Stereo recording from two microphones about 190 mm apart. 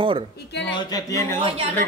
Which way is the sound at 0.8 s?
20° left (ahead or behind).